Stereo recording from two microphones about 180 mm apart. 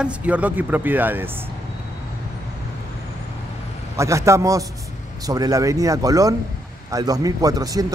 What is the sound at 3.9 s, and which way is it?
A man's voice, 15° right (ahead or behind).